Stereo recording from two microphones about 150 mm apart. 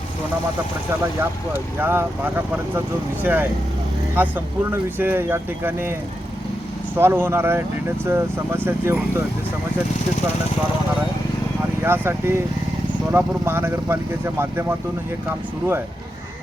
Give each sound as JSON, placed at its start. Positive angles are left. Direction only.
{"t": 1.8, "sound": "speech", "side_deg": -15}
{"t": 6.9, "sound": "speech", "side_deg": -15}
{"t": 11.8, "sound": "speech", "side_deg": -15}